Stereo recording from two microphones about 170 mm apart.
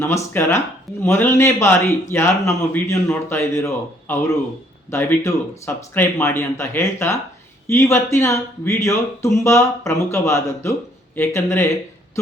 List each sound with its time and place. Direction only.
0.0 s speech: 15° left (ahead or behind)